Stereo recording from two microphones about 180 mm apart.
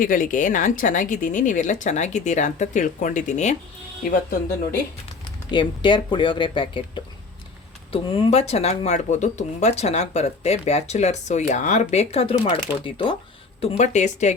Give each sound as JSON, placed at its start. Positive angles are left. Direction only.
{"t": 0.0, "sound": "speech", "side_deg": 50}
{"t": 5.5, "sound": "speech", "side_deg": 25}
{"t": 8.1, "sound": "speech", "side_deg": 30}
{"t": 13.6, "sound": "speech", "side_deg": 40}